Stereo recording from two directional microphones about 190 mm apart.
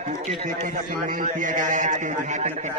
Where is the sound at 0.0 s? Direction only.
35° right (ahead or behind).